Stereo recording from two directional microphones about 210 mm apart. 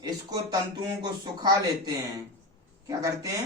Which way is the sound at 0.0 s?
20° right (ahead or behind).